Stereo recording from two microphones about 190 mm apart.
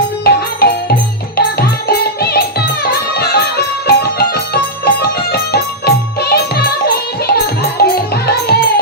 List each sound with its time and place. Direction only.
0.3 s music: 55° left (ahead or behind)